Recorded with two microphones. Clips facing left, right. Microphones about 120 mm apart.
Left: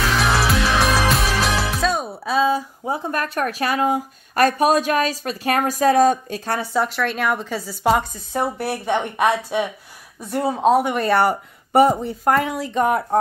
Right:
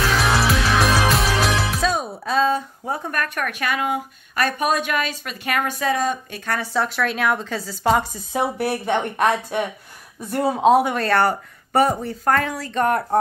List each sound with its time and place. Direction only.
0.2 s music: centre (ahead or behind)
2.9 s a woman's voice: 25° left (ahead or behind); by 6.4 s 45° left (ahead or behind)
6.4 s speech: 25° left (ahead or behind)
6.7 s a woman's voice: centre (ahead or behind)
11.0 s speech: 10° left (ahead or behind)
12.8 s a woman's voice: 5° left (ahead or behind)